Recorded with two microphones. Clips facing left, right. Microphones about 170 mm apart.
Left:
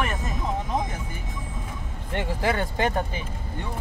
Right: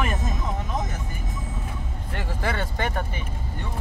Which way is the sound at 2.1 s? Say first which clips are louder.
Left 4 dB; 20° left (ahead or behind).